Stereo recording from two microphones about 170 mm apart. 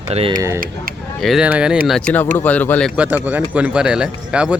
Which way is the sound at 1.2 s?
Centre (ahead or behind).